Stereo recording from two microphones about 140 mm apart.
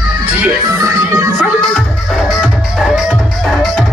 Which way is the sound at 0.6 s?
25° right (ahead or behind).